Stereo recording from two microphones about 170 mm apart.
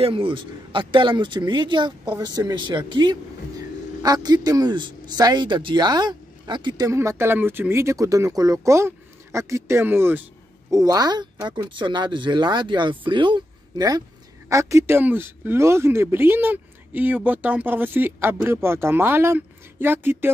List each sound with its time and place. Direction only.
0.0 s a man's voice: 30° right (ahead or behind); by 10.2 s 10° right (ahead or behind)
10.7 s a man's voice: 20° right (ahead or behind)